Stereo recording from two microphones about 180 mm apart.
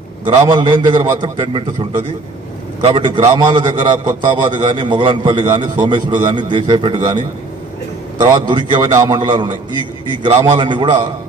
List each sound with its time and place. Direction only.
0.4 s a man's voice: 25° right (ahead or behind)
8.2 s a man's voice: 25° right (ahead or behind)